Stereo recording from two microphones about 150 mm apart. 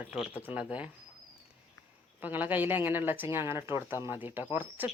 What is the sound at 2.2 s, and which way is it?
A woman's voice, 10° right (ahead or behind).